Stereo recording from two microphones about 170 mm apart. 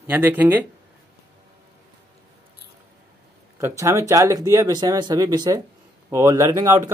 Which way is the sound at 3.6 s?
15° right (ahead or behind).